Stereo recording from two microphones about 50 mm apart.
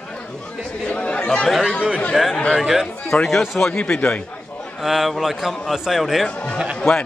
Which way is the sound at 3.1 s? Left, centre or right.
Left.